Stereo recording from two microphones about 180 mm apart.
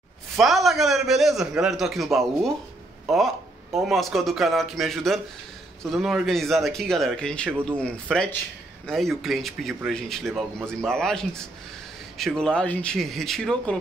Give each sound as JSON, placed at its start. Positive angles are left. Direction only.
{"t": 0.4, "sound": "a man's voice", "side_deg": 0}